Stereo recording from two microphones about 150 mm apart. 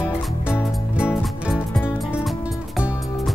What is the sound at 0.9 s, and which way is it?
Music, 5° right (ahead or behind).